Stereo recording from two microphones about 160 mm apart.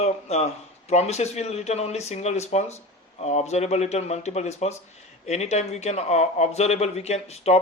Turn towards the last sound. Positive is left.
turn(degrees=40)  # may be behind; listen again after turning